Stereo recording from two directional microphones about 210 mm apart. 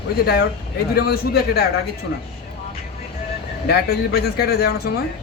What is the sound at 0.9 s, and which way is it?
Speech, 50° left (ahead or behind).